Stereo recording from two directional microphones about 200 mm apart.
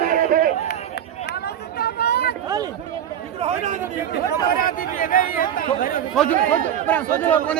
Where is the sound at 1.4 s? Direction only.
50° left (ahead or behind).